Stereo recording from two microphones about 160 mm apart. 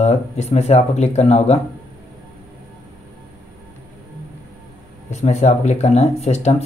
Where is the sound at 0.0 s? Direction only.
40° left (ahead or behind).